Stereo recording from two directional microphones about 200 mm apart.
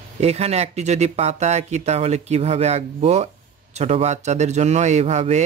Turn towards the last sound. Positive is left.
turn(degrees=-35)  # may be behind; listen again after turning